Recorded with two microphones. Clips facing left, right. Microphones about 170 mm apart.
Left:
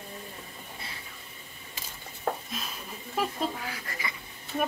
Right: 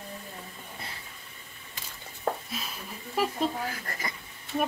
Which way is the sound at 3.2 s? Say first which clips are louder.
Right 2 dB; 5° right (ahead or behind).